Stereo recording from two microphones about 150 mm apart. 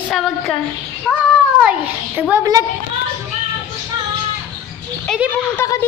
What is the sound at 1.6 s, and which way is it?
Speech, 10° right (ahead or behind).